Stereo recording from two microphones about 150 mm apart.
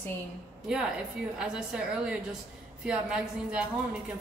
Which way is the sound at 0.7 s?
5° right (ahead or behind).